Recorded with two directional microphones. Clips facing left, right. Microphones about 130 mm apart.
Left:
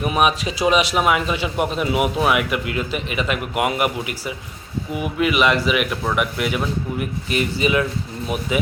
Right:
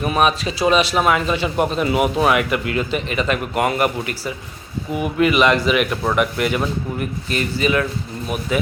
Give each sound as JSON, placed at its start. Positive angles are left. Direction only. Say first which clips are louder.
{"t": 0.0, "sound": "speech", "louder": "right 1 dB", "side_deg": 10}
{"t": 7.3, "sound": "speech", "louder": "even", "side_deg": 15}